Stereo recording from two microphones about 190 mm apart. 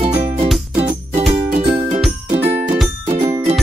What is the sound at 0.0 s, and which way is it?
Music, 30° right (ahead or behind).